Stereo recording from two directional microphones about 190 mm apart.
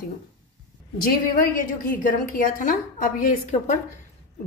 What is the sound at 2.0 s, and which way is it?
A woman's voice, 45° left (ahead or behind).